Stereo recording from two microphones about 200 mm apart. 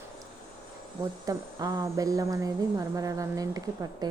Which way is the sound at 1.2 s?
20° right (ahead or behind).